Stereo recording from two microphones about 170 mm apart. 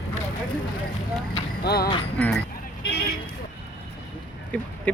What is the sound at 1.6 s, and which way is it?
Speech, 65° left (ahead or behind).